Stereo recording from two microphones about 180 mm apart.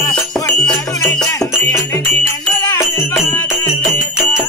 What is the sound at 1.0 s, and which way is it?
Music, 10° left (ahead or behind).